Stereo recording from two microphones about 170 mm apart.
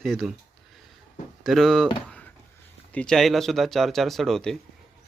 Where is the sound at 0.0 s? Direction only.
Centre (ahead or behind).